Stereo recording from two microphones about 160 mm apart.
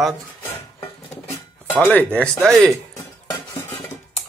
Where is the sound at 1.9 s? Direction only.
5° left (ahead or behind).